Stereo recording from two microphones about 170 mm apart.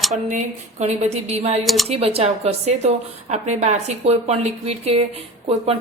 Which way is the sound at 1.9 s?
35° right (ahead or behind).